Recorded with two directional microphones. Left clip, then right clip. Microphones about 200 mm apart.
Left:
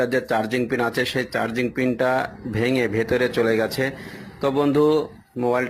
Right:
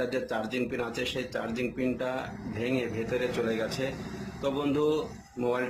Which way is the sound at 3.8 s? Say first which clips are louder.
Left 8 dB; 35° left (ahead or behind).